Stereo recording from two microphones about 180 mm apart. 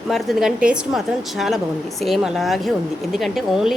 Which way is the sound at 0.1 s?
Centre (ahead or behind).